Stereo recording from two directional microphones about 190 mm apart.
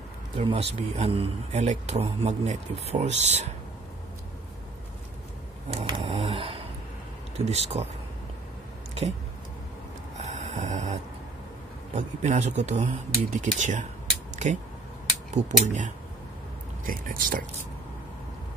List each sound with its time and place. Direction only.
0.4 s a man's voice: 30° right (ahead or behind)
5.7 s a sound: 25° right (ahead or behind)
7.3 s a man's voice: 35° right (ahead or behind)
10.2 s snort: 35° right (ahead or behind)
11.9 s a man's voice: 40° right (ahead or behind)
14.3 s a sound: 40° right (ahead or behind)
15.3 s a man's voice: 40° right (ahead or behind)